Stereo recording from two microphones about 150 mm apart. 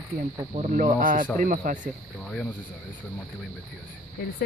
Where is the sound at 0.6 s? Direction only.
55° right (ahead or behind).